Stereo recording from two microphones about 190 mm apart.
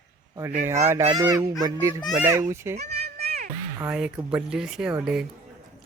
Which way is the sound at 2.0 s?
5° right (ahead or behind).